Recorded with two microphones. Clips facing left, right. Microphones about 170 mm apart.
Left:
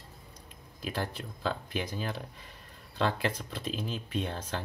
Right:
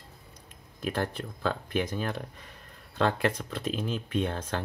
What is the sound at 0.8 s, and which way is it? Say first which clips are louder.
Speech: right 4 dB; 55° right (ahead or behind).